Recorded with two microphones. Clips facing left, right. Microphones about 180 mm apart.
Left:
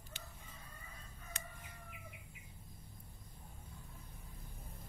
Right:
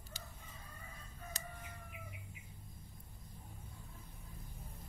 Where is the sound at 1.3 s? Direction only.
35° right (ahead or behind).